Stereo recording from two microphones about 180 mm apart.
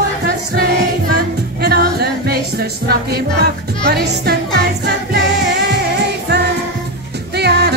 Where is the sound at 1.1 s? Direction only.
65° right (ahead or behind).